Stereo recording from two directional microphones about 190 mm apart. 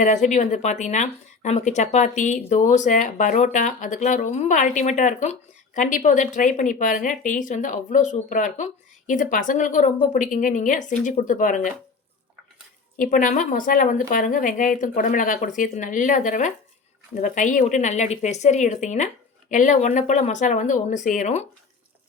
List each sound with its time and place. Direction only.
0.0 s speech: 40° left (ahead or behind)
13.0 s a woman's voice: 45° left (ahead or behind)